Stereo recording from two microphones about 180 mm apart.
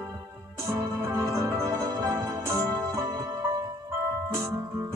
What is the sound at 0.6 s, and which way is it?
Music, 15° right (ahead or behind).